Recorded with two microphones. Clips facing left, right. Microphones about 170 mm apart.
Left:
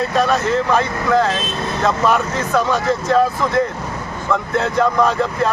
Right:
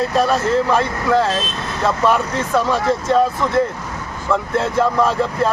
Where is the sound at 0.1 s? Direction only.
Centre (ahead or behind).